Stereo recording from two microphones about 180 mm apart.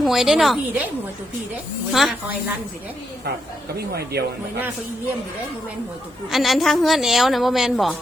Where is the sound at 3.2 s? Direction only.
65° right (ahead or behind).